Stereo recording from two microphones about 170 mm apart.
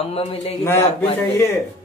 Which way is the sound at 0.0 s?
35° left (ahead or behind).